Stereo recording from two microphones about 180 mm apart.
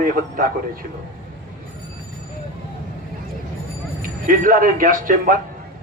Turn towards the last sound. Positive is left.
turn(degrees=-50)  # may be behind; listen again after turning